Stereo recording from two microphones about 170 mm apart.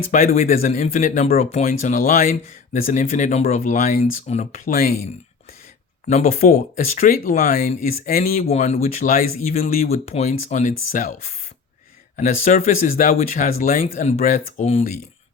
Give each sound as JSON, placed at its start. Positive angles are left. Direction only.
{"t": 0.1, "sound": "speech", "side_deg": 55}
{"t": 1.8, "sound": "speech", "side_deg": 50}
{"t": 6.2, "sound": "speech", "side_deg": 55}
{"t": 8.7, "sound": "speech", "side_deg": 40}
{"t": 9.0, "sound": "speech", "side_deg": 55}
{"t": 9.8, "sound": "speech", "side_deg": 40}
{"t": 13.9, "sound": "speech", "side_deg": 40}
{"t": 14.2, "sound": "speech", "side_deg": 50}